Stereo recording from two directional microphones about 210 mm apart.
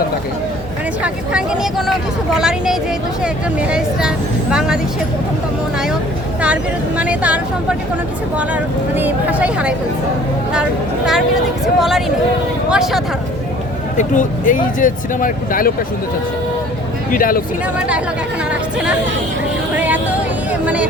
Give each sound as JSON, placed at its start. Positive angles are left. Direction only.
{"t": 1.0, "sound": "speech", "side_deg": -5}
{"t": 6.4, "sound": "speech", "side_deg": -5}
{"t": 13.9, "sound": "speech", "side_deg": 35}
{"t": 17.1, "sound": "speech", "side_deg": 40}
{"t": 19.7, "sound": "music", "side_deg": -5}